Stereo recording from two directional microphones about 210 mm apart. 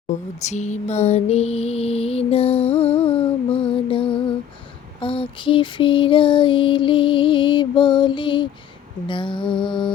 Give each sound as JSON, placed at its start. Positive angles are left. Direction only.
{"t": 0.1, "sound": "a sound", "side_deg": 35}
{"t": 4.9, "sound": "lullaby", "side_deg": 25}
{"t": 9.0, "sound": "music", "side_deg": 25}